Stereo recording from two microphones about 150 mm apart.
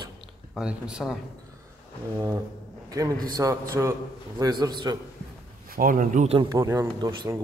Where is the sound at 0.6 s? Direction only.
5° right (ahead or behind).